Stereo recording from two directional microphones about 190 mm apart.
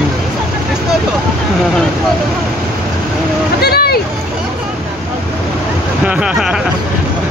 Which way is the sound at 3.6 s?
55° left (ahead or behind).